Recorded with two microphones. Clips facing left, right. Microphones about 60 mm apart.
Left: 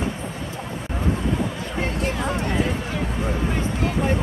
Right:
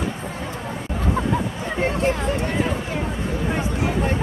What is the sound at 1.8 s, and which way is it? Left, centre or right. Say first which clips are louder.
Speech: right 5 dB; right.